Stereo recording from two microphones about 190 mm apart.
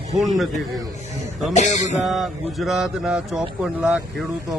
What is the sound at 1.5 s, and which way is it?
Music, 40° left (ahead or behind).